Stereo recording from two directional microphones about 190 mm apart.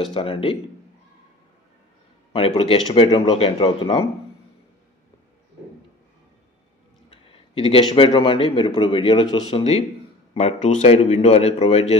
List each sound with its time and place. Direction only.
0.0 s a man's voice: 25° left (ahead or behind)
2.3 s a man's voice: 30° left (ahead or behind)
7.1 s a man's voice: 30° left (ahead or behind)